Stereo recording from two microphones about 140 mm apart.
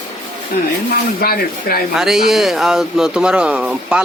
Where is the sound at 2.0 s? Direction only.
5° right (ahead or behind).